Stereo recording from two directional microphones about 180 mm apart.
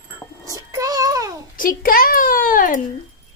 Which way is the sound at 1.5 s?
50° left (ahead or behind).